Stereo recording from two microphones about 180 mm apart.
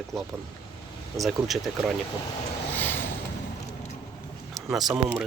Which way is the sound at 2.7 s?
10° left (ahead or behind).